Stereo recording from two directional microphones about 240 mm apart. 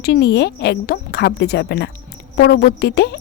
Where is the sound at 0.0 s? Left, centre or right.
Left.